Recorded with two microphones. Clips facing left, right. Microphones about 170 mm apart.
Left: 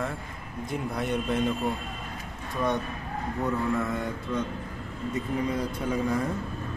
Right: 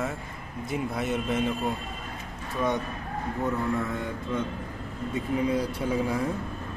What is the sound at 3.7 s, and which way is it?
Speech, centre (ahead or behind).